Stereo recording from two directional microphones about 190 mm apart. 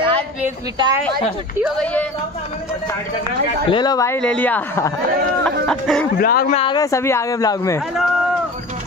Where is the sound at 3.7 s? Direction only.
20° left (ahead or behind).